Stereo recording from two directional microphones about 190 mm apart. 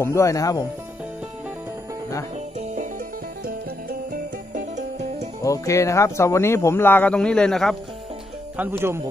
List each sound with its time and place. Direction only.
0.0 s speech: 15° left (ahead or behind)
4.1 s music: 45° right (ahead or behind)
5.4 s speech: 15° left (ahead or behind)
8.5 s speech: 10° right (ahead or behind)